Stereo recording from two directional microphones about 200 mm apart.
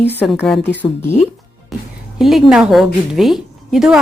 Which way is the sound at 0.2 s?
5° left (ahead or behind).